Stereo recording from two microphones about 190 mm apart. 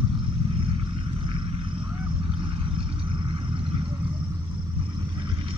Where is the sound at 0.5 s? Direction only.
25° right (ahead or behind).